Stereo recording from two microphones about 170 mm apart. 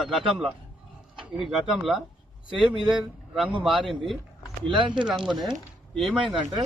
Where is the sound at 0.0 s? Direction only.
Centre (ahead or behind).